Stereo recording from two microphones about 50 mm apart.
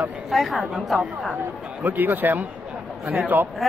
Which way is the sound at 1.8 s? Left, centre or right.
Right.